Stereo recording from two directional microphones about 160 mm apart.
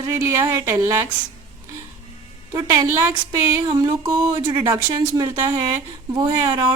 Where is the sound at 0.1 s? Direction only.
20° right (ahead or behind).